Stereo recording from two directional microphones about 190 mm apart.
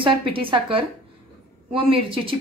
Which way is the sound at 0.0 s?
25° right (ahead or behind).